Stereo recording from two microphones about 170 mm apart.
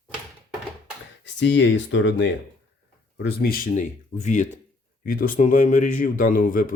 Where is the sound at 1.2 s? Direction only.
90° left.